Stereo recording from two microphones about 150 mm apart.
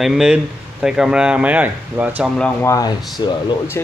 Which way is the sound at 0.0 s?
5° right (ahead or behind).